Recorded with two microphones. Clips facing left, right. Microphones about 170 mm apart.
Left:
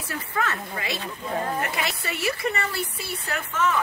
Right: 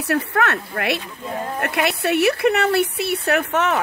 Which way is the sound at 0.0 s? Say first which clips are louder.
Right 8 dB; 70° right (ahead or behind).